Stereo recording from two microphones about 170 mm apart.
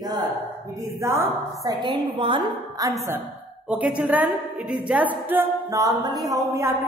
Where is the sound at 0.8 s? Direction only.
15° right (ahead or behind).